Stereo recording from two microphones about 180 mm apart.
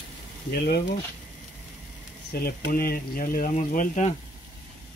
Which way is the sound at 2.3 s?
55° left (ahead or behind).